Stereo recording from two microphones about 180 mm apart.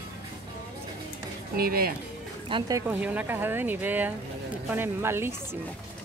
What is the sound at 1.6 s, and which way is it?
Speech, 55° right (ahead or behind).